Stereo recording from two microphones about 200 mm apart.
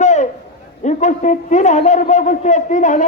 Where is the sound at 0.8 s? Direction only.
35° left (ahead or behind).